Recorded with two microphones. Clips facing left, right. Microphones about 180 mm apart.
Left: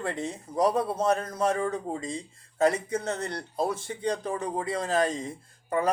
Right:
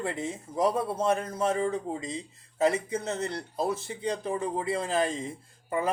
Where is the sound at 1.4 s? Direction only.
25° right (ahead or behind).